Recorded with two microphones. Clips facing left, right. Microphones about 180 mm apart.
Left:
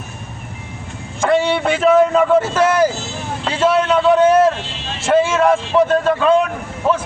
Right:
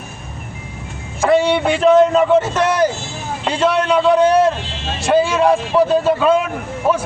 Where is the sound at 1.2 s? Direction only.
Centre (ahead or behind).